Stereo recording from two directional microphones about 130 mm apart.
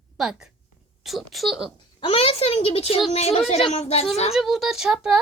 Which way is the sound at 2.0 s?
45° left (ahead or behind).